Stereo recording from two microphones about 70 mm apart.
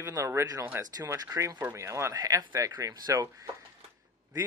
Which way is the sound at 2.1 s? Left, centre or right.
Right.